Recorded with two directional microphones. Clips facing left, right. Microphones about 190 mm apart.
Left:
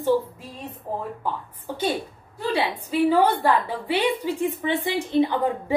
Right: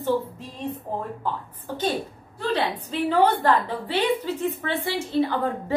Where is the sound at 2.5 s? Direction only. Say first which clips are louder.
Left 2 dB; 10° left (ahead or behind).